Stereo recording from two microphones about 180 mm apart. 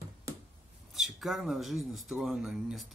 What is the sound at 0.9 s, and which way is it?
Speech, centre (ahead or behind).